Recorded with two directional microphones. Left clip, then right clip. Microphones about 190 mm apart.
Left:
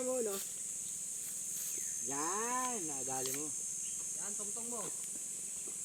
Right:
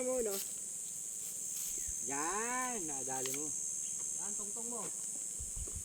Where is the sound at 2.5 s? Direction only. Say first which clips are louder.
Left 1 dB; 10° left (ahead or behind).